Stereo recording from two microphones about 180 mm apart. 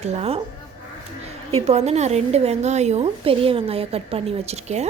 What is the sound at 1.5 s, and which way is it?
A woman's voice, 35° right (ahead or behind).